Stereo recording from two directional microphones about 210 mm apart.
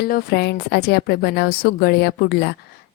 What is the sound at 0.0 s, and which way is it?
A woman's voice, 45° left (ahead or behind).